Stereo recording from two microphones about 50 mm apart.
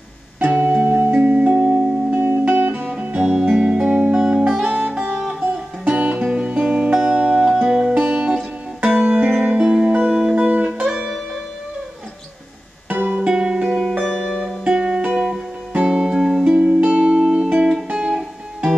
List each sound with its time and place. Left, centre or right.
0.4 s music: right
2.0 s music: right
3.2 s music: centre
4.6 s music: right
5.1 s music: centre
5.4 s music: right
10.3 s music: right
10.9 s music: centre
12.9 s music: right
13.2 s music: centre
14.0 s music: centre
14.4 s music: centre
16.4 s music: right